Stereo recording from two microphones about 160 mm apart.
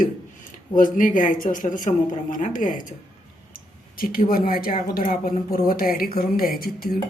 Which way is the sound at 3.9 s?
65° left (ahead or behind).